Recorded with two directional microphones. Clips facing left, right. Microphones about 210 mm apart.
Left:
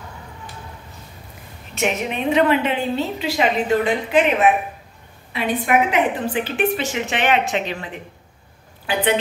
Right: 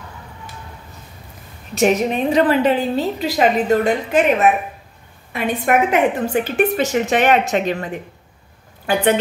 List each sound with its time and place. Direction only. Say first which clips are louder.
1.8 s a woman's voice: right 6 dB; 40° right (ahead or behind)